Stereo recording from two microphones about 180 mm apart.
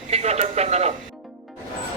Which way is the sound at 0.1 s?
35° right (ahead or behind).